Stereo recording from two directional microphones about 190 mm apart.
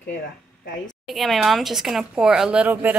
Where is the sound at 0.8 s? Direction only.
Centre (ahead or behind).